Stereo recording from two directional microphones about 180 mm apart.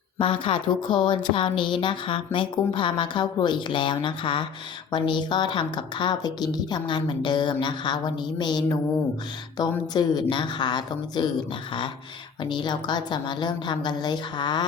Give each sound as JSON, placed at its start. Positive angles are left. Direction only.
{"t": 0.2, "sound": "speech", "side_deg": 30}
{"t": 12.4, "sound": "speech", "side_deg": 25}